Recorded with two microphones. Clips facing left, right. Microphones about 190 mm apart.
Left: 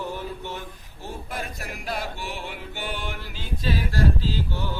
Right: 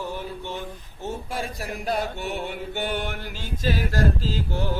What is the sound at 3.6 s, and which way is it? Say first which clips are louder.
Male singing: right 1 dB; 45° right (ahead or behind).